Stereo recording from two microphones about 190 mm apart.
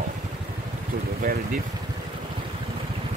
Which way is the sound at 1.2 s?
45° right (ahead or behind).